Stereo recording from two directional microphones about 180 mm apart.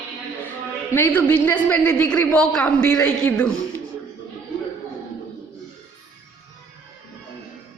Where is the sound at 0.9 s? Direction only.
10° left (ahead or behind).